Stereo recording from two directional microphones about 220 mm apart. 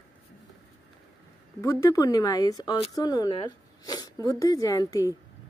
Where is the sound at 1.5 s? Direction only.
15° left (ahead or behind).